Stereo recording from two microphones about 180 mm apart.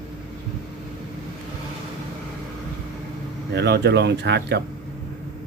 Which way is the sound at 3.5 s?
70° right (ahead or behind).